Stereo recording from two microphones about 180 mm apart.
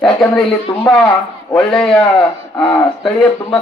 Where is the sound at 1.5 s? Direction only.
5° left (ahead or behind).